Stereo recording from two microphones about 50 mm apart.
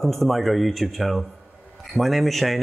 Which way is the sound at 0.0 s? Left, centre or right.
Centre.